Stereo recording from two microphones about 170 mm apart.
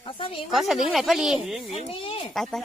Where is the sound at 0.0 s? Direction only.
30° left (ahead or behind).